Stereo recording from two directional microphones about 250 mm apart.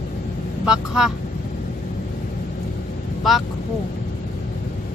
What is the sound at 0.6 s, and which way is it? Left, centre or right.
Speech, centre.